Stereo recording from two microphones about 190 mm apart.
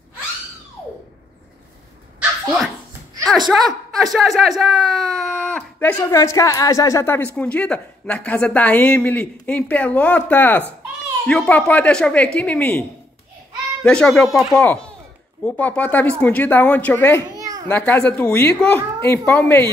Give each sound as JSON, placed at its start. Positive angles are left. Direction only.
{"t": 3.3, "sound": "a woman's voice", "side_deg": 0}
{"t": 13.8, "sound": "a child's voice", "side_deg": 5}
{"t": 17.3, "sound": "children playing", "side_deg": -20}
{"t": 17.6, "sound": "a woman's voice", "side_deg": 10}